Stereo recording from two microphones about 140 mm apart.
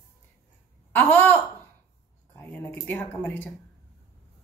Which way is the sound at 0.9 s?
15° left (ahead or behind).